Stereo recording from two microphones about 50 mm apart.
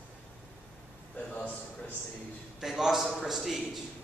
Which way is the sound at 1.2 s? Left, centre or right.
Left.